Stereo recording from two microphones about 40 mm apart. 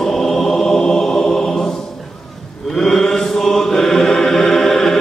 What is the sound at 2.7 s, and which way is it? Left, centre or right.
Mantra, centre.